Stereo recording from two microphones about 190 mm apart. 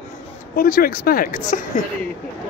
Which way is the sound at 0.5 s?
50° left (ahead or behind).